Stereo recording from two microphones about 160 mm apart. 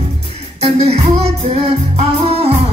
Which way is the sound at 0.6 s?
40° right (ahead or behind).